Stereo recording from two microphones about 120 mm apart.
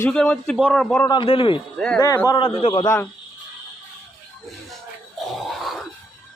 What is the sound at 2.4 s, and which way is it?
Speech, 50° left (ahead or behind).